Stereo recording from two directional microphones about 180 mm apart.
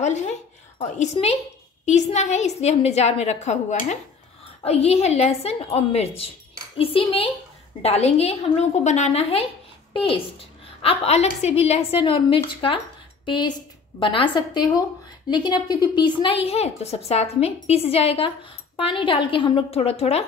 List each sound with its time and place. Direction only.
0.0 s a woman's voice: 40° left (ahead or behind)